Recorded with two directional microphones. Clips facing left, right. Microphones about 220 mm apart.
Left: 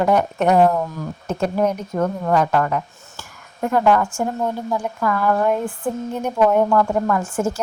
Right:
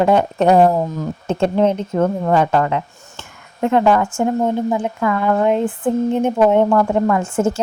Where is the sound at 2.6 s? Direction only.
25° right (ahead or behind).